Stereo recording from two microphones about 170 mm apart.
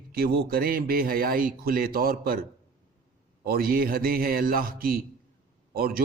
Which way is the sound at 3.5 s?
60° right (ahead or behind).